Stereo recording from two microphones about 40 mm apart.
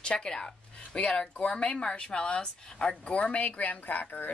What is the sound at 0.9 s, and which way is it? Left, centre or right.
A woman's voice, left.